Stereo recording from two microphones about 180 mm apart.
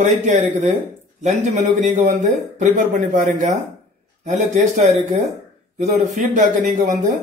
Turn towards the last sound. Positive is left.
turn(degrees=-45)  # may be behind; listen again after turning